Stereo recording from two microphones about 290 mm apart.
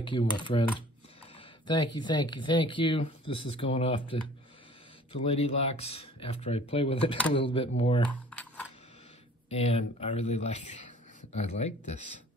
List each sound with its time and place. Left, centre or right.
0.0 s speech: centre
2.0 s speech: centre
3.3 s speech: left
3.7 s speech: centre
8.1 s a sound: centre
9.5 s speech: left